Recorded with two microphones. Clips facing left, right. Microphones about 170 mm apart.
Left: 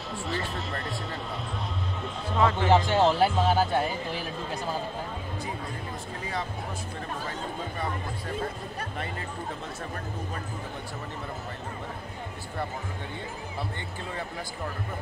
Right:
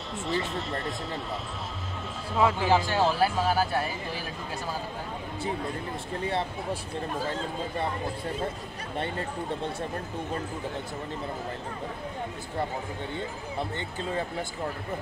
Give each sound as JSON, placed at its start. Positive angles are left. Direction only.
{"t": 2.3, "sound": "speech", "side_deg": -5}
{"t": 2.9, "sound": "speech", "side_deg": 20}